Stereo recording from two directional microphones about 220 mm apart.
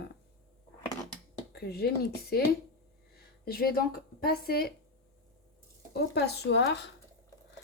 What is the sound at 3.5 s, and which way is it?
A woman's voice, 40° left (ahead or behind).